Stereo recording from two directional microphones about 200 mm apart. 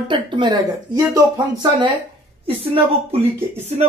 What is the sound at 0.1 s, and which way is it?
Speech, 25° right (ahead or behind).